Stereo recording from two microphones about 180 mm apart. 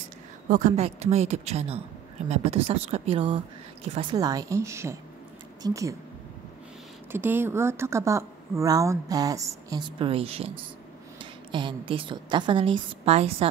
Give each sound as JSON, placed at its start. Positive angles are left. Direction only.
{"t": 0.5, "sound": "speech", "side_deg": -40}
{"t": 7.1, "sound": "speech", "side_deg": -10}
{"t": 11.5, "sound": "a woman's voice", "side_deg": -25}